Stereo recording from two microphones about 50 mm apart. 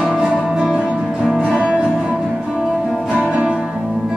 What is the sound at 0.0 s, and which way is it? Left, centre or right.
Music, centre.